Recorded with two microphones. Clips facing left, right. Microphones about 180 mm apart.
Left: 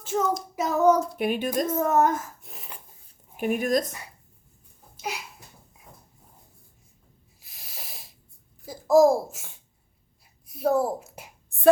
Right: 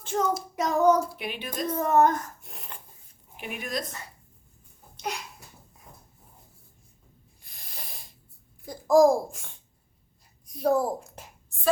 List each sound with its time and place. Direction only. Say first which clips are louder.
0.0 s child singing: left 1 dB; 5° left (ahead or behind)
1.1 s speech: left 10 dB; 45° left (ahead or behind)
1.6 s speech: right 2 dB; 5° left (ahead or behind)
3.3 s speech: left 10 dB; 45° left (ahead or behind)
3.8 s speech: even; 10° left (ahead or behind)
4.9 s babbling: even; 5° left (ahead or behind)
7.4 s a sound: left 1 dB; 5° left (ahead or behind)
8.6 s a child's voice: left 1 dB; 5° left (ahead or behind)